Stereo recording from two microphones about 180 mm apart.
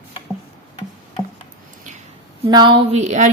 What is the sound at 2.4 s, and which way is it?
Speech, 25° right (ahead or behind).